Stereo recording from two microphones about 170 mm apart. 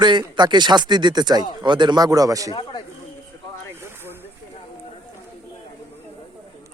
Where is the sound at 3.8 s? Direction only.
15° right (ahead or behind).